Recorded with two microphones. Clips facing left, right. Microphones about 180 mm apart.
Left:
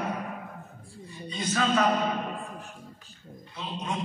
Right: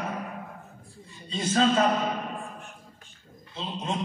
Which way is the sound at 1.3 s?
25° right (ahead or behind).